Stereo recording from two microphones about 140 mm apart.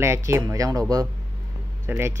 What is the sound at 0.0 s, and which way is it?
Speech, 20° right (ahead or behind).